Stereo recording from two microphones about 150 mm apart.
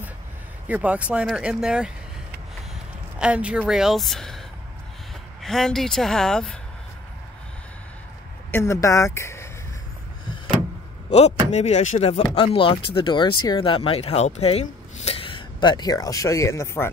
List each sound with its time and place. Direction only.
0.7 s speech: 10° right (ahead or behind)
3.2 s a woman's voice: 5° right (ahead or behind)
5.4 s a woman's voice: 5° left (ahead or behind)
8.5 s speech: 15° left (ahead or behind)
11.1 s speech: 45° left (ahead or behind); by 16.9 s 15° left (ahead or behind)